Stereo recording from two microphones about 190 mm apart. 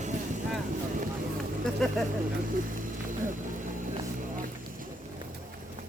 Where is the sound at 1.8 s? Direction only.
Centre (ahead or behind).